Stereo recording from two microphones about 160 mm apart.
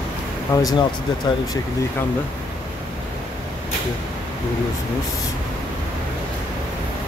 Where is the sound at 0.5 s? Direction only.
20° left (ahead or behind).